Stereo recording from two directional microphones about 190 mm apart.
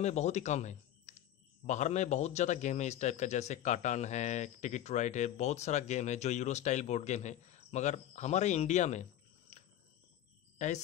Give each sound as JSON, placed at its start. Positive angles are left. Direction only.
{"t": 0.0, "sound": "a man's voice", "side_deg": 35}